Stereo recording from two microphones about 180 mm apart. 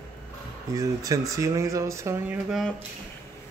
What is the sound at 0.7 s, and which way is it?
Speech, 20° right (ahead or behind).